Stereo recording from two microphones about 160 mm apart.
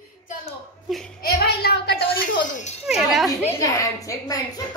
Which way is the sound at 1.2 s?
80° left.